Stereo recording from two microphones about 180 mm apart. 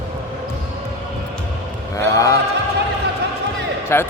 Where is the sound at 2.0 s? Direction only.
15° left (ahead or behind).